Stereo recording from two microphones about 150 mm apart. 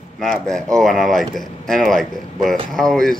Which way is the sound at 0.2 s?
Centre (ahead or behind).